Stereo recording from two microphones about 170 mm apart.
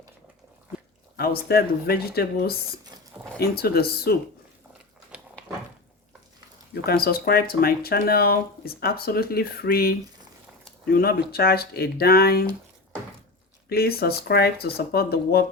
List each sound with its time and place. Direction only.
1.1 s speech: 65° left (ahead or behind)
6.8 s speech: 65° left (ahead or behind)
10.9 s speech: 65° left (ahead or behind)
13.7 s speech: 65° left (ahead or behind)